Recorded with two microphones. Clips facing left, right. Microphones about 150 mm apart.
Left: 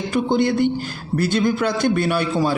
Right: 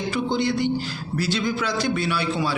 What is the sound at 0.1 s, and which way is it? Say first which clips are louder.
A man's voice: left 5 dB; 50° left (ahead or behind).